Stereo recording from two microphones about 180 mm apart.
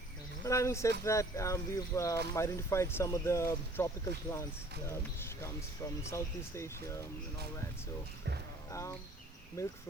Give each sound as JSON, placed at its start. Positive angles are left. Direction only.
{"t": 0.4, "sound": "speech", "side_deg": 15}
{"t": 5.4, "sound": "speech", "side_deg": 15}
{"t": 8.7, "sound": "speech", "side_deg": 15}